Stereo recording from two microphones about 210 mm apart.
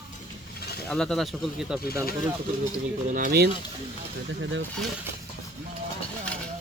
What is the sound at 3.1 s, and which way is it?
Speech, 45° right (ahead or behind).